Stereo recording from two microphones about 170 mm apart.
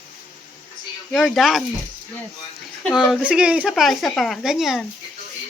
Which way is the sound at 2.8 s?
Centre (ahead or behind).